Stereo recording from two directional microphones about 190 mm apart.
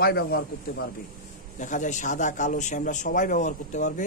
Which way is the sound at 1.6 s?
40° left (ahead or behind).